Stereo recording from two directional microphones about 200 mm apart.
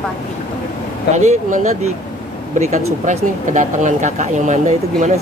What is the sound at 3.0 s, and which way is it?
Speech, 40° right (ahead or behind).